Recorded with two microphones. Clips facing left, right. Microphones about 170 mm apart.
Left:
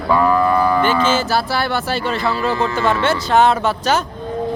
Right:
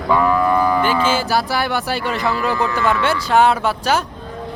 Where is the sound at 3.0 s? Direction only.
10° right (ahead or behind).